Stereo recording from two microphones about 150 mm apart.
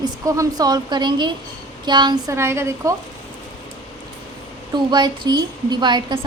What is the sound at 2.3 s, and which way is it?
Speech, 15° right (ahead or behind).